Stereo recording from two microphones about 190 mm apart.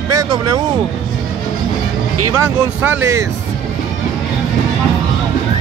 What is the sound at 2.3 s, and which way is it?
Speech, 15° right (ahead or behind).